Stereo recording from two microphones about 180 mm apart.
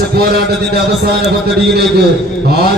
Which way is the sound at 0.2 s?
60° right (ahead or behind).